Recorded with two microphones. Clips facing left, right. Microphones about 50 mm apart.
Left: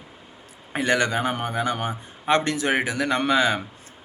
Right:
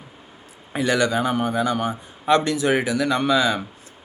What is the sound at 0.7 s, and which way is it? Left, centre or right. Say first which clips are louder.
Speech: right 2 dB; left.